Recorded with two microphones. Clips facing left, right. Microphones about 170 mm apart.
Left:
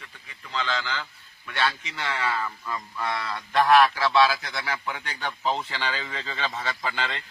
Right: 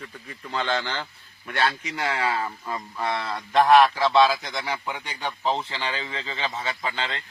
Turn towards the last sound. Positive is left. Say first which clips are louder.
# even
turn(degrees=-20)  # may be behind; listen again after turning